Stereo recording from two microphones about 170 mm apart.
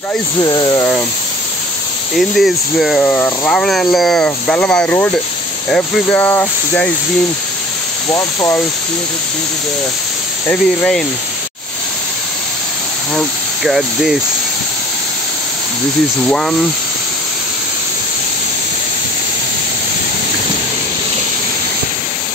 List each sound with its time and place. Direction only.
0.4 s speech: 25° left (ahead or behind)
2.1 s speech: centre (ahead or behind)
8.1 s speech: 20° left (ahead or behind)
10.5 s speech: 5° left (ahead or behind)
13.7 s speech: centre (ahead or behind)
16.3 s speech: 5° left (ahead or behind)